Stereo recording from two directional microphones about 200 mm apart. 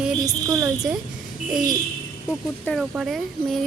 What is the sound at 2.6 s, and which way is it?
Speech, centre (ahead or behind).